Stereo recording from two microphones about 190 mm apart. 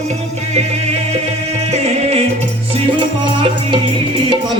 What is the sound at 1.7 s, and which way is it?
Music, 35° right (ahead or behind).